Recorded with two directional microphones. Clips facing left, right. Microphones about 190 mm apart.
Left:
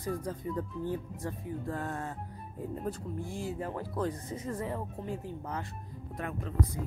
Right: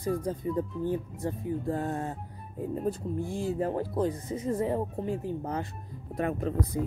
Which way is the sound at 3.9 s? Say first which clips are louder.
Right 5 dB; 20° right (ahead or behind).